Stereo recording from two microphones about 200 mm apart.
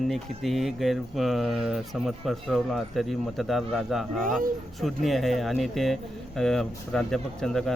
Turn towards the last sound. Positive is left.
turn(degrees=0)  # may be behind; listen again after turning